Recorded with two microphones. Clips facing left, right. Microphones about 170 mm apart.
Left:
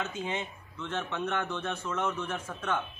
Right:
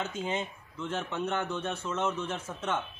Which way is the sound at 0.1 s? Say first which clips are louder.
Right 2 dB; 25° right (ahead or behind).